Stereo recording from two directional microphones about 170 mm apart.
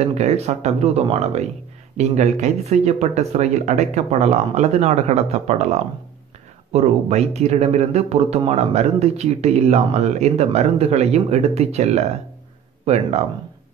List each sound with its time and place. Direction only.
0.0 s speech: 40° right (ahead or behind)